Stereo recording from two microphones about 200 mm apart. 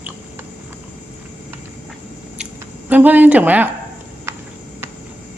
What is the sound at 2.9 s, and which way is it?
Speech, 10° right (ahead or behind).